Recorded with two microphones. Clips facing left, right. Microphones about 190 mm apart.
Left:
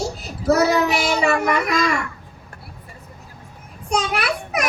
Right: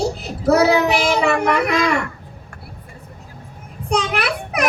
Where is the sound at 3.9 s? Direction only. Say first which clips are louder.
Right 2 dB; 60° right (ahead or behind).